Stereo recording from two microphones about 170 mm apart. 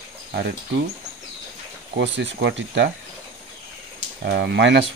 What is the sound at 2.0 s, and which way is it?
Speech, 90° right.